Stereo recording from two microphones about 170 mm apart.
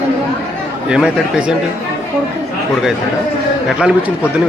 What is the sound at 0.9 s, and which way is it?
Speech, 5° right (ahead or behind).